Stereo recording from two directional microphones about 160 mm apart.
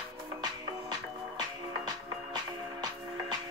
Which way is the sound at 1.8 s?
25° right (ahead or behind).